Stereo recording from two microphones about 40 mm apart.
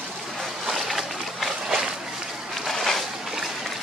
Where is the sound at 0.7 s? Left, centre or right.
Centre.